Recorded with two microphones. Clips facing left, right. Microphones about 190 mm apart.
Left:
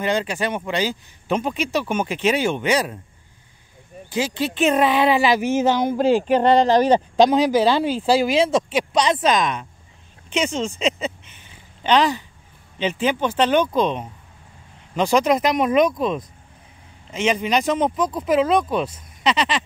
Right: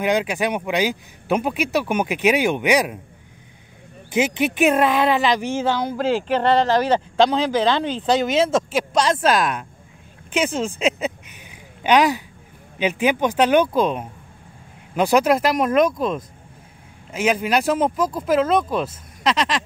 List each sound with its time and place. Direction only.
0.0 s speech: 10° right (ahead or behind)
4.1 s speech: 20° right (ahead or behind)
4.6 s speech: centre (ahead or behind)
10.8 s a sound: 10° right (ahead or behind)
12.7 s speech: 10° right (ahead or behind)